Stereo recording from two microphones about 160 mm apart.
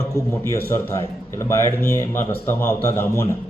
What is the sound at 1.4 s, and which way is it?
A man's voice, 15° left (ahead or behind).